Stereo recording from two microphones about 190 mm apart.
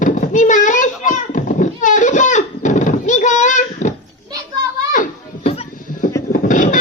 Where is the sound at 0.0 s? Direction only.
40° left (ahead or behind).